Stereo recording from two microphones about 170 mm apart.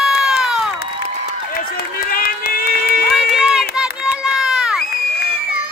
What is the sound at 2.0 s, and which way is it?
Run, 60° left (ahead or behind).